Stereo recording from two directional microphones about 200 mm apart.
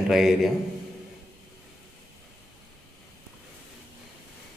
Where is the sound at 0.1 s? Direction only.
Centre (ahead or behind).